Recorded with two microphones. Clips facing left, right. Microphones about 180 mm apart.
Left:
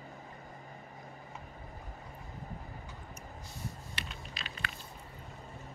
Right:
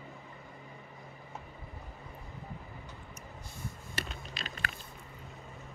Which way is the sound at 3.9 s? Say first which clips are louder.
Right 4 dB; 45° right (ahead or behind).